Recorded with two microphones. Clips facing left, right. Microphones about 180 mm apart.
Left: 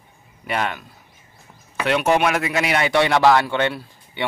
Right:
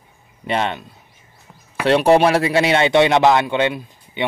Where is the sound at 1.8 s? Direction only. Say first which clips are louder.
Right 5 dB; 30° right (ahead or behind).